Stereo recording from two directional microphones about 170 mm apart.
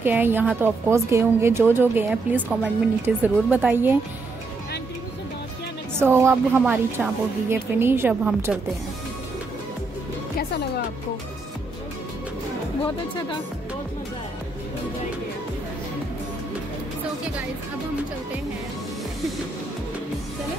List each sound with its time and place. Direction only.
0.0 s a woman's voice: 10° right (ahead or behind)
5.9 s a woman's voice: 15° right (ahead or behind)
12.8 s speech: 30° left (ahead or behind)